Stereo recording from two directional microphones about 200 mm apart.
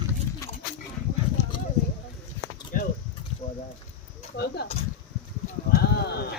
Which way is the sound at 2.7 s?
45° left (ahead or behind).